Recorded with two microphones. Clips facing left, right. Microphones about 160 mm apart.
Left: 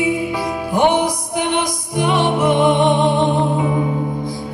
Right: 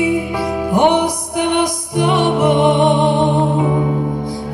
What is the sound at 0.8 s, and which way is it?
Music, 60° right (ahead or behind).